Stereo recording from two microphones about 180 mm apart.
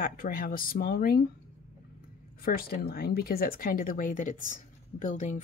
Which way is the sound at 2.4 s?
55° left (ahead or behind).